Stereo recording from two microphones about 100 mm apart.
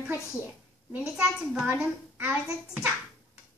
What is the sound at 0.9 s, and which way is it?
Speech, 10° right (ahead or behind).